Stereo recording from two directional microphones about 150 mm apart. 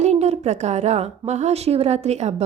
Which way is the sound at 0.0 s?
45° right (ahead or behind).